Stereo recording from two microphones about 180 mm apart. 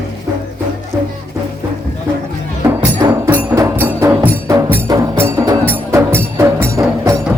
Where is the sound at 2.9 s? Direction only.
15° right (ahead or behind).